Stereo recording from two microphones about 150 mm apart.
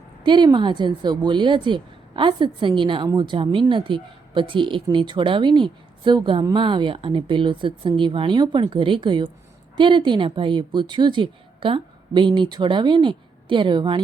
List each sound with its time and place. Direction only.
0.2 s speech: 30° right (ahead or behind)